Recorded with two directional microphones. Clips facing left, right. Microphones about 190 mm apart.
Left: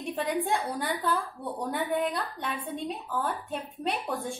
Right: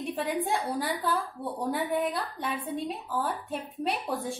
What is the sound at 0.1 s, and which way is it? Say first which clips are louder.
A woman's voice: left 2 dB; centre (ahead or behind).